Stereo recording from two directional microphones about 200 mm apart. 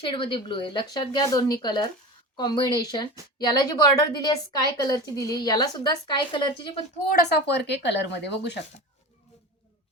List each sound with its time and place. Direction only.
0.0 s a woman's voice: 25° left (ahead or behind)
7.1 s a woman's voice: 50° left (ahead or behind)